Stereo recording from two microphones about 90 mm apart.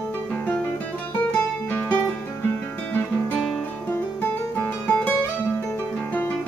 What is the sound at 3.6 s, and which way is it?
Music, 20° left (ahead or behind).